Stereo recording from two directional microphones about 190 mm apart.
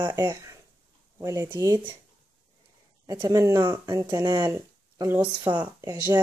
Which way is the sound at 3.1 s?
20° right (ahead or behind).